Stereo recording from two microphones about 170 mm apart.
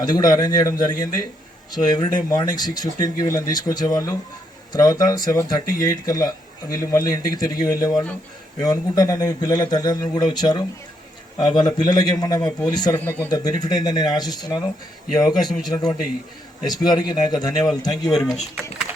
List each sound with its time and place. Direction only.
0.0 s speech: 25° left (ahead or behind)
13.0 s speech: 10° left (ahead or behind)
18.1 s speech: centre (ahead or behind)